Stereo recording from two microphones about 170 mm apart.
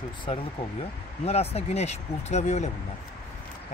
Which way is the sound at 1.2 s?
35° left (ahead or behind).